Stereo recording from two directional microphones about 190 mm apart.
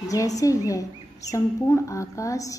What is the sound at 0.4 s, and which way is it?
Speech, 15° left (ahead or behind).